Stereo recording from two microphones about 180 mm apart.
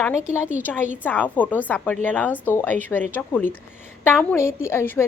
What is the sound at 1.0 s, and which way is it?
A woman's voice, 10° left (ahead or behind).